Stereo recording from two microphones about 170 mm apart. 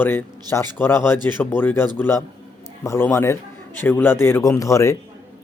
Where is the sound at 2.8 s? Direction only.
15° left (ahead or behind).